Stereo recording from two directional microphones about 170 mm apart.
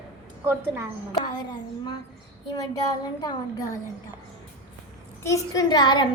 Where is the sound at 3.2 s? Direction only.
20° left (ahead or behind).